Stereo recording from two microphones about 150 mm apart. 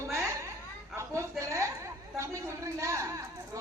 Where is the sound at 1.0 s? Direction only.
20° right (ahead or behind).